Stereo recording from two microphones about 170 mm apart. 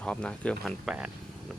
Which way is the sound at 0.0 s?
5° left (ahead or behind).